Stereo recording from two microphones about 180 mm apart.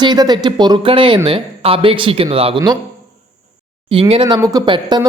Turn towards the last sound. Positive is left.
turn(degrees=-25)  # may be behind; listen again after turning